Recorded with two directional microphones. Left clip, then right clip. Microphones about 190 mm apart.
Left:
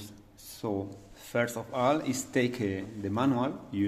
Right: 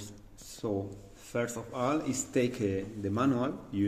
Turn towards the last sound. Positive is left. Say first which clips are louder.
# left 1 dB
turn(degrees=25)  # may be behind; listen again after turning